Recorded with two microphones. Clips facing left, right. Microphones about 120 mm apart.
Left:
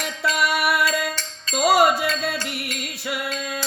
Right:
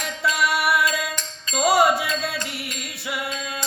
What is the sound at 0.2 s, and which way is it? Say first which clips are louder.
Music: even; 60° left (ahead or behind).